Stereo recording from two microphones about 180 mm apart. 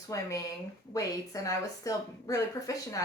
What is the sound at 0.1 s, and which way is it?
A woman's voice, 20° left (ahead or behind).